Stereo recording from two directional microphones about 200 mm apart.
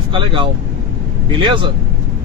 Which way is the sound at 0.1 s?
25° right (ahead or behind).